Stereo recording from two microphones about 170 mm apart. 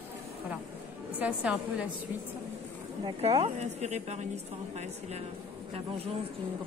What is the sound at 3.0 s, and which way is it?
A woman's voice, 30° right (ahead or behind).